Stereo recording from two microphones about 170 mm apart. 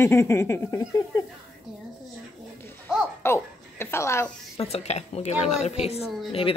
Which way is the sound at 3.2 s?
15° left (ahead or behind).